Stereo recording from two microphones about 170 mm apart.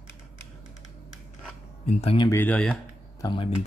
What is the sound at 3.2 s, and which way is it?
Speech, 25° left (ahead or behind).